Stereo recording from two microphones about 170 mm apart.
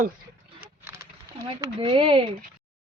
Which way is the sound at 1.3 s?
25° right (ahead or behind).